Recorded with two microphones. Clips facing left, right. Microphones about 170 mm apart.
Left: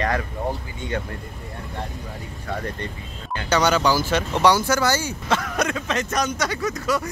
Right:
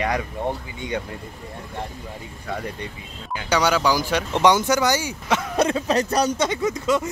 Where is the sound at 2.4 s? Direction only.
10° right (ahead or behind).